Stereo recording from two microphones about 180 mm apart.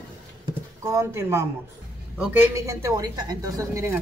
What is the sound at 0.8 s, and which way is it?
A woman's voice, 15° right (ahead or behind).